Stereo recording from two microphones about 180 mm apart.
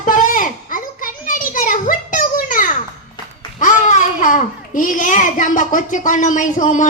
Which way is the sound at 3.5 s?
45° left (ahead or behind).